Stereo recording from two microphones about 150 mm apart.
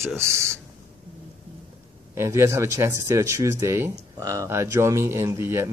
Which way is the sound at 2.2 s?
20° right (ahead or behind).